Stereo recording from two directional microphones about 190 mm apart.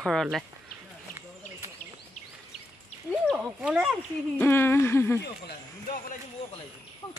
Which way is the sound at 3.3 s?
5° right (ahead or behind).